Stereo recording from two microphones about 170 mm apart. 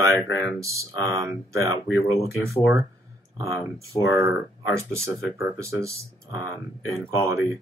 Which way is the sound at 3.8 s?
20° right (ahead or behind).